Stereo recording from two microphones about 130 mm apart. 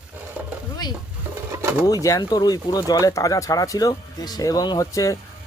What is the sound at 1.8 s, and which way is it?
Speech, 25° left (ahead or behind).